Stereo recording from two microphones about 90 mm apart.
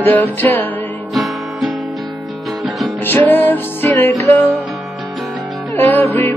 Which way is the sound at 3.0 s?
20° left (ahead or behind).